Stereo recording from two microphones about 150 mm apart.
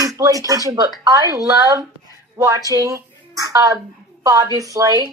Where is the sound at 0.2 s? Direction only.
25° right (ahead or behind).